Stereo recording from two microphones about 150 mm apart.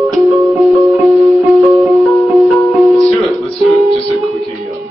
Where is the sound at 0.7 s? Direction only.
20° right (ahead or behind).